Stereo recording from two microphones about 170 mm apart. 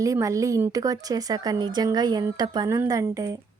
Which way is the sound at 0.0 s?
20° right (ahead or behind).